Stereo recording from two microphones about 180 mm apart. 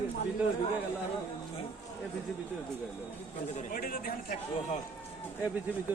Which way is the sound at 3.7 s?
55° left (ahead or behind).